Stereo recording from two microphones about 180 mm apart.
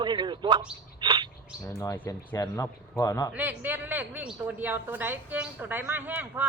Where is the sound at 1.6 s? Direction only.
15° left (ahead or behind).